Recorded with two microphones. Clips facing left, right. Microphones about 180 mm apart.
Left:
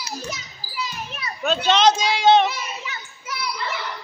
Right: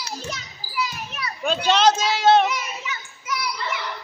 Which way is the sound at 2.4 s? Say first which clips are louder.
Right 1 dB; 30° left (ahead or behind).